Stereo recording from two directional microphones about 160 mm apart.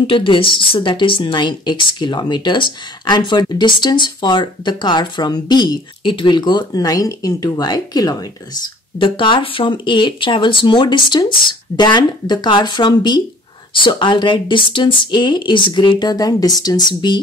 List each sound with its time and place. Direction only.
0.0 s speech: 35° left (ahead or behind)